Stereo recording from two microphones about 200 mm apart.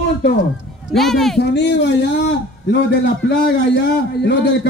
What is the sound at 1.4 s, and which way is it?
Speech, 60° left (ahead or behind).